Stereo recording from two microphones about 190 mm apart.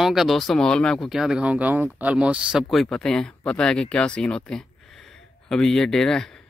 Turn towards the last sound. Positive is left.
turn(degrees=5)  # may be behind; listen again after turning